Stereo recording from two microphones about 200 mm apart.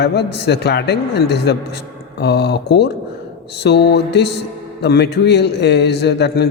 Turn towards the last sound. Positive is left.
turn(degrees=55)  # may be behind; listen again after turning